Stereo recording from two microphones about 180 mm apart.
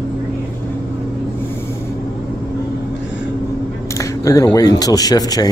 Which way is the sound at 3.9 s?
15° left (ahead or behind).